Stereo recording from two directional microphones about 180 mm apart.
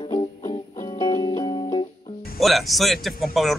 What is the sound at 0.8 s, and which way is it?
Music, 25° left (ahead or behind).